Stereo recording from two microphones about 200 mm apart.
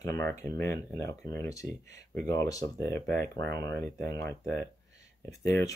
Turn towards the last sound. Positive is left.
turn(degrees=15)  # may be behind; listen again after turning